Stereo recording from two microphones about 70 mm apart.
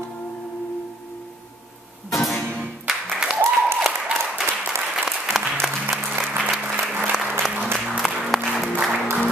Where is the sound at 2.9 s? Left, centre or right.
Centre.